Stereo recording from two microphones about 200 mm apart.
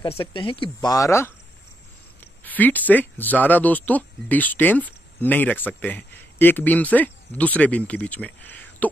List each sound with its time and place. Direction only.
0.0 s speech: 25° left (ahead or behind)
2.4 s speech: 10° left (ahead or behind)